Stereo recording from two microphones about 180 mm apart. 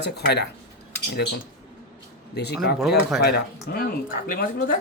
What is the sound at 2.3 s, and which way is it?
Speech, 70° left (ahead or behind).